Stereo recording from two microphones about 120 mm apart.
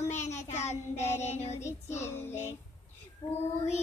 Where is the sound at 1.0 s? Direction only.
70° left (ahead or behind).